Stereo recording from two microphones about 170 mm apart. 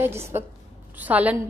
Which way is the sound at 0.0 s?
15° right (ahead or behind).